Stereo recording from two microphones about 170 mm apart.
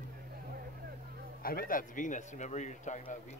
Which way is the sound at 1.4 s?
55° left (ahead or behind).